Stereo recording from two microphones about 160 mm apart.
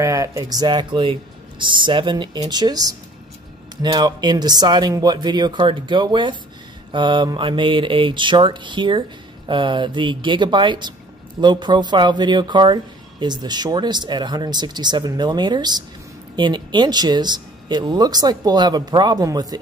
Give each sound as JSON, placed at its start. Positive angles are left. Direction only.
{"t": 0.0, "sound": "speech", "side_deg": -20}
{"t": 6.9, "sound": "mantra", "side_deg": -30}
{"t": 9.5, "sound": "speech", "side_deg": -30}